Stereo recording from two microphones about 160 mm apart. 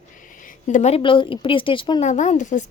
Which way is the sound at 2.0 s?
50° left (ahead or behind).